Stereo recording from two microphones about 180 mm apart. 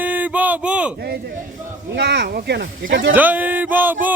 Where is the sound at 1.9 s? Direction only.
75° right (ahead or behind); by 3.2 s 90° right.